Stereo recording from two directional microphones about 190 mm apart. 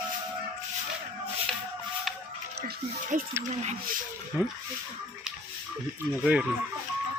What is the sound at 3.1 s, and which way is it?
Speech, 45° right (ahead or behind).